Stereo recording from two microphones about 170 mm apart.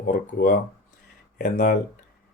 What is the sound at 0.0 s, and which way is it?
Speech, 60° left (ahead or behind).